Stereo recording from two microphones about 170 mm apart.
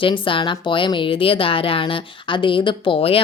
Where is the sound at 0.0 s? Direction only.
30° left (ahead or behind).